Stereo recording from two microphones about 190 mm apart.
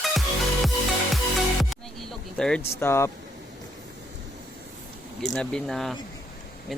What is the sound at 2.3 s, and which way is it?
Speech, 5° left (ahead or behind).